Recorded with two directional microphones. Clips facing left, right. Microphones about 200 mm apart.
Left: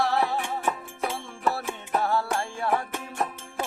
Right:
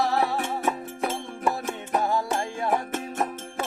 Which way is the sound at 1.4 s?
15° right (ahead or behind).